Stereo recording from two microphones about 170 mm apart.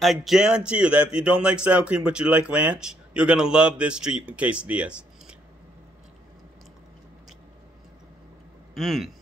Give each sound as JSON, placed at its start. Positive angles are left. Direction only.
{"t": 0.0, "sound": "a man's voice", "side_deg": 0}
{"t": 8.7, "sound": "a man's voice", "side_deg": 0}